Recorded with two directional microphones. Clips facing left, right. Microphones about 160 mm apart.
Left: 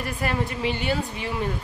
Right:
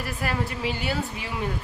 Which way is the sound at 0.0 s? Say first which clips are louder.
Left 2 dB; 5° right (ahead or behind).